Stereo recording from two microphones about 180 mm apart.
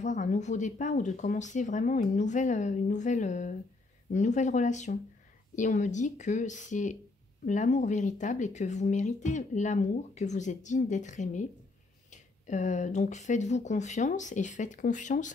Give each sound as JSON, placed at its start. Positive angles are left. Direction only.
{"t": 0.0, "sound": "speech", "side_deg": 45}